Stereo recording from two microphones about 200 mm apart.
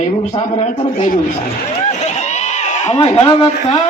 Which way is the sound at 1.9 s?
35° left (ahead or behind).